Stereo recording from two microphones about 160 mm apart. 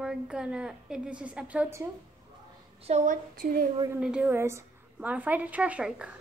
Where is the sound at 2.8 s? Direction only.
45° right (ahead or behind).